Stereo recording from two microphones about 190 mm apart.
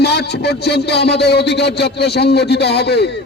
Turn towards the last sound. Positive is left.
turn(degrees=60)  # may be behind; listen again after turning